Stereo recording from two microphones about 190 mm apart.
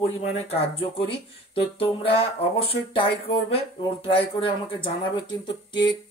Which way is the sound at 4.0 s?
25° left (ahead or behind).